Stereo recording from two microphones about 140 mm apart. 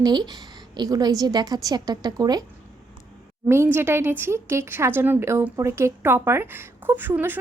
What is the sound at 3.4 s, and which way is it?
A woman's voice, 20° right (ahead or behind).